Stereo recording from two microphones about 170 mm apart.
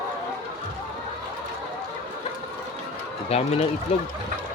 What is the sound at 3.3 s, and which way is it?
Speech, 40° left (ahead or behind).